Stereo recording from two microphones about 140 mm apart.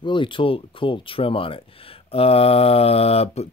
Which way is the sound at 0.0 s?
35° left (ahead or behind).